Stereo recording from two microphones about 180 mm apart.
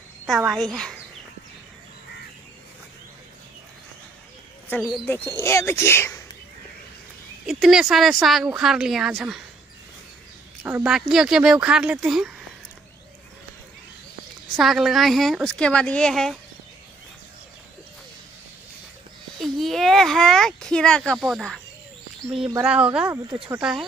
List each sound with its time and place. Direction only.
0.3 s speech: 5° right (ahead or behind)
4.8 s speech: centre (ahead or behind)
5.4 s speech: 15° left (ahead or behind)
7.4 s speech: centre (ahead or behind)
10.6 s a woman's voice: 10° right (ahead or behind)
14.6 s speech: centre (ahead or behind)
19.4 s speech: centre (ahead or behind)
22.6 s speech: 5° right (ahead or behind)